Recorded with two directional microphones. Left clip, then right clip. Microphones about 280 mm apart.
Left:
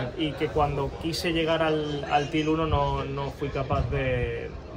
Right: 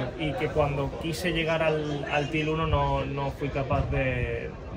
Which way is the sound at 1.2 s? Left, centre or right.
Centre.